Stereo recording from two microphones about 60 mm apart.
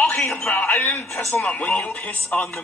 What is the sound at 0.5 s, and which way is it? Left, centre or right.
Speech, left.